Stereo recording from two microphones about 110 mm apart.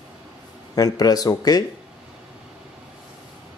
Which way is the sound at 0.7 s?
35° left (ahead or behind).